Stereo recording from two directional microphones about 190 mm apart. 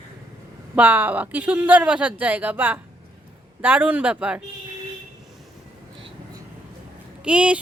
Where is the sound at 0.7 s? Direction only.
10° right (ahead or behind).